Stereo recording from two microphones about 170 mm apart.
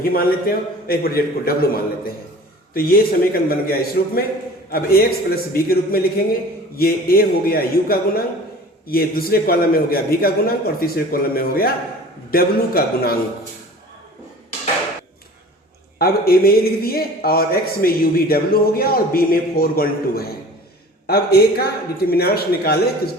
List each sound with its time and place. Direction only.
0.0 s a man's voice: 60° left (ahead or behind)
16.0 s a man's voice: 65° left (ahead or behind)